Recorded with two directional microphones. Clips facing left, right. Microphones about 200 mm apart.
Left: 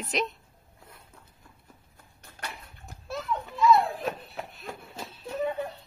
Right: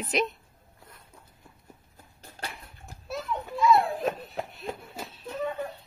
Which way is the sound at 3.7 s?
30° right (ahead or behind).